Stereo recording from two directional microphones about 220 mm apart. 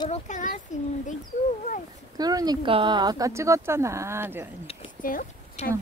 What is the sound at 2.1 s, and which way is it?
Speech, 15° right (ahead or behind).